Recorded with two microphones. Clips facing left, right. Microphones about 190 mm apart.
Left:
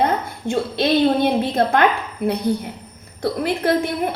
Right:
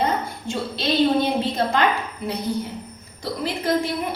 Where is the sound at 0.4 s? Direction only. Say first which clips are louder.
Left 9 dB; 55° left (ahead or behind).